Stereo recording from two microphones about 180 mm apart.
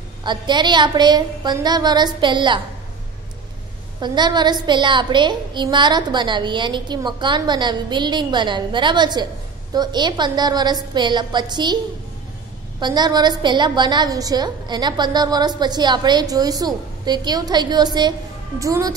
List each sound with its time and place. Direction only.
0.2 s a woman's voice: 25° right (ahead or behind)
4.0 s a woman's voice: 25° right (ahead or behind)
12.8 s a woman's voice: 25° right (ahead or behind)